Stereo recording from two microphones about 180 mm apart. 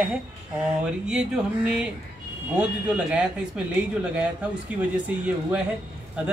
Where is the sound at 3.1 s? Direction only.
5° right (ahead or behind).